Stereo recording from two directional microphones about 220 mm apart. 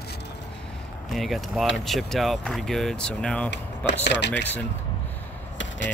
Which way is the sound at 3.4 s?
50° left (ahead or behind).